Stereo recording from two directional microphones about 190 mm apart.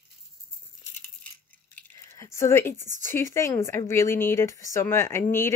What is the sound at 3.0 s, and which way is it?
Speech, 15° left (ahead or behind).